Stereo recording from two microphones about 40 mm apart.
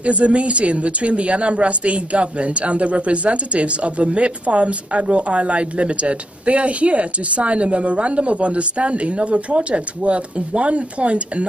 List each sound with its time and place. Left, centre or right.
0.0 s a woman's voice: right